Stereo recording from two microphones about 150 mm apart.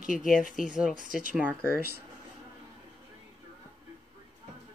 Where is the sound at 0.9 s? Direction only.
65° right (ahead or behind).